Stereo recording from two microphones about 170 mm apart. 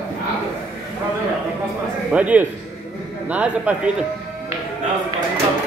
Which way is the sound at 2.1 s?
10° right (ahead or behind).